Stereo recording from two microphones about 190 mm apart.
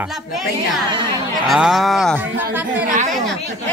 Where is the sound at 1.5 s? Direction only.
5° right (ahead or behind).